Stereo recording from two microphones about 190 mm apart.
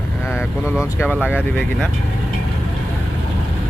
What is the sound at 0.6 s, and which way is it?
Speech, 5° right (ahead or behind).